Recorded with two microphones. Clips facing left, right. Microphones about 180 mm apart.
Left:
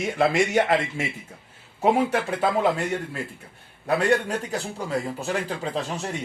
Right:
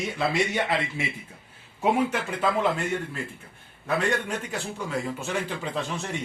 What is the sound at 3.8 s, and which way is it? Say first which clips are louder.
Speech: left 4 dB; 35° left (ahead or behind).